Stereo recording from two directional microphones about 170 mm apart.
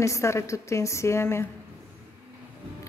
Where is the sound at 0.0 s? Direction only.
15° left (ahead or behind).